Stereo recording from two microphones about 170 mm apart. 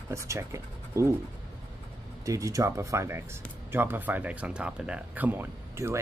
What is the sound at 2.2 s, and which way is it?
Speech, 20° right (ahead or behind).